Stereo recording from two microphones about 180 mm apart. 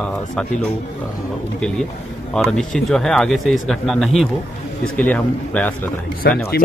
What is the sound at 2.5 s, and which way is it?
A man's voice, centre (ahead or behind).